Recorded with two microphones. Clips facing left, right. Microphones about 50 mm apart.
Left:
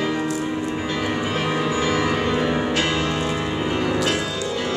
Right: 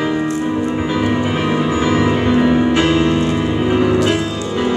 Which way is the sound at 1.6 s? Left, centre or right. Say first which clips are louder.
Right 6 dB; right.